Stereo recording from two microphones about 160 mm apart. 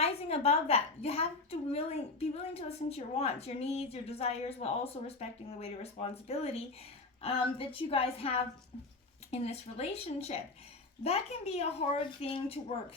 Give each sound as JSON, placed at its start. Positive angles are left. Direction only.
{"t": 0.0, "sound": "a woman's voice", "side_deg": 40}